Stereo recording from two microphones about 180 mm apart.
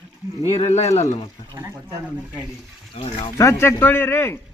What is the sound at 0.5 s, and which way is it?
Speech, 40° left (ahead or behind).